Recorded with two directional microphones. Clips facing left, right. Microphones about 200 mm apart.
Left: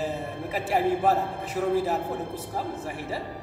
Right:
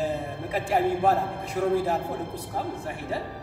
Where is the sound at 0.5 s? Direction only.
5° left (ahead or behind).